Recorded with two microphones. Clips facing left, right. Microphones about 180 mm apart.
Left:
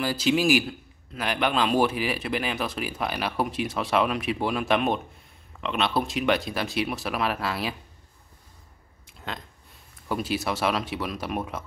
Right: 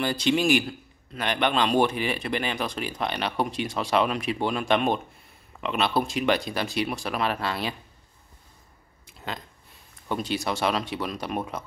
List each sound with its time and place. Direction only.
0.0 s a man's voice: 5° left (ahead or behind)
9.0 s a sound: centre (ahead or behind)
10.0 s a man's voice: 5° left (ahead or behind)